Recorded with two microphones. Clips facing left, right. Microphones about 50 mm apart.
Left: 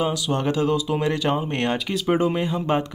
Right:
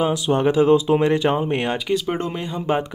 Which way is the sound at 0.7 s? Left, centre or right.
Right.